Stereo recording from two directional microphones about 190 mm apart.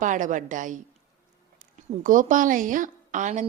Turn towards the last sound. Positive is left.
turn(degrees=-40)  # may be behind; listen again after turning